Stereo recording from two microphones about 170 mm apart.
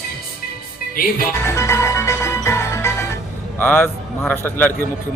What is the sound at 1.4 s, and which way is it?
Music, 15° left (ahead or behind).